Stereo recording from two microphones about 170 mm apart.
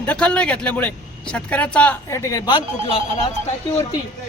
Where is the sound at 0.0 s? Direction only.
5° left (ahead or behind).